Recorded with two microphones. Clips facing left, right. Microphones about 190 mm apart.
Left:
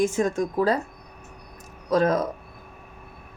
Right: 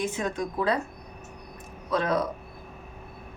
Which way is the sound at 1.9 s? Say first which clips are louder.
Left 5 dB; 40° left (ahead or behind).